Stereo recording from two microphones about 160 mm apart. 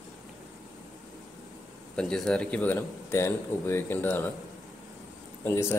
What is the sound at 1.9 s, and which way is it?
Speech, 5° left (ahead or behind).